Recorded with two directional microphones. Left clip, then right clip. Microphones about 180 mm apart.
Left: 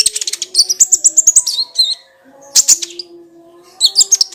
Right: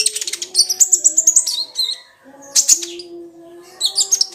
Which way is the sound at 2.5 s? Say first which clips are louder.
Left 4 dB; 20° left (ahead or behind).